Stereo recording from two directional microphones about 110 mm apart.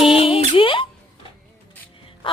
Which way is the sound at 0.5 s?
50° left (ahead or behind).